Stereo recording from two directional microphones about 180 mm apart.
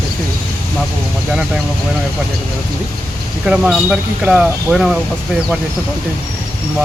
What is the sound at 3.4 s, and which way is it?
Speech, 5° right (ahead or behind).